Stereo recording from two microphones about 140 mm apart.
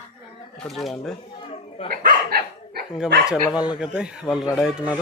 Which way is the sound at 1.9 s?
90° right.